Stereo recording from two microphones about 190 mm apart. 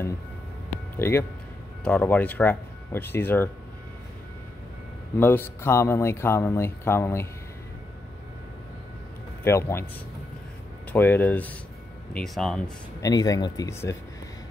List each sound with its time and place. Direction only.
0.9 s speech: 15° left (ahead or behind)
5.2 s speech: 10° left (ahead or behind)
9.4 s speech: 15° left (ahead or behind)
10.9 s speech: 10° left (ahead or behind)
13.0 s speech: 20° left (ahead or behind)